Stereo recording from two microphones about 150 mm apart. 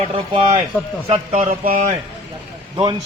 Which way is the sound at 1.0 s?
40° right (ahead or behind).